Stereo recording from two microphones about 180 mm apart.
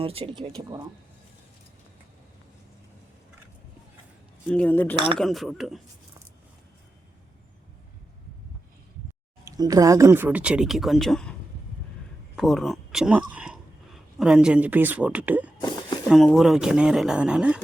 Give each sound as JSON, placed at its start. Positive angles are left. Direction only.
{"t": 0.0, "sound": "speech", "side_deg": -30}
{"t": 4.4, "sound": "speech", "side_deg": 5}
{"t": 4.9, "sound": "speech", "side_deg": -30}
{"t": 5.2, "sound": "speech", "side_deg": 0}
{"t": 9.4, "sound": "speech", "side_deg": -20}
{"t": 12.4, "sound": "speech", "side_deg": 0}